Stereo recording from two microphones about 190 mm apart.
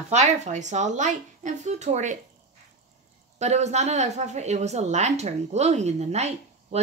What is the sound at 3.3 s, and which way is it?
A woman's voice, 35° right (ahead or behind).